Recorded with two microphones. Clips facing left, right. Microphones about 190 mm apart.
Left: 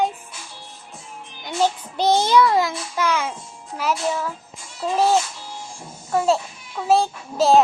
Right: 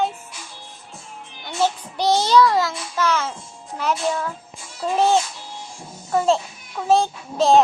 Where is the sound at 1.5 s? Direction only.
15° left (ahead or behind).